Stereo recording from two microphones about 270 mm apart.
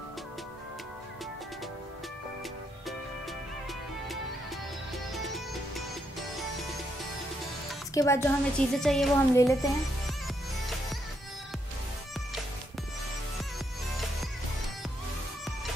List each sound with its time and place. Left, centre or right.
7.9 s a woman's voice: centre